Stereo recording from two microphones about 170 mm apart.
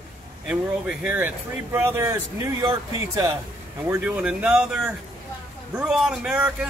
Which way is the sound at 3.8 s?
5° right (ahead or behind).